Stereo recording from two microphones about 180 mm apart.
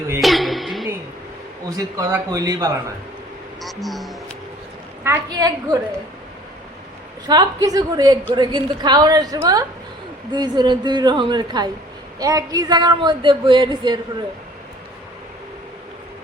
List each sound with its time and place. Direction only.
0.2 s a sound: centre (ahead or behind)
1.7 s speech: 20° right (ahead or behind)
3.6 s speech: centre (ahead or behind)
5.0 s speech: 15° right (ahead or behind)
7.3 s speech: 20° right (ahead or behind)